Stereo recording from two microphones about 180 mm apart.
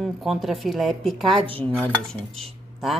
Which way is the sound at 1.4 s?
30° right (ahead or behind).